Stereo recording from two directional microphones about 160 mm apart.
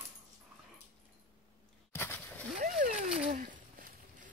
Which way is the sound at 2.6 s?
50° right (ahead or behind).